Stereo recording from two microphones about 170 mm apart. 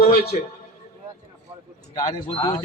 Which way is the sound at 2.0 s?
25° left (ahead or behind).